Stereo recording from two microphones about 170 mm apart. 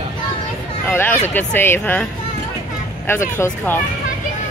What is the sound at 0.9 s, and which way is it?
Speech, 10° left (ahead or behind).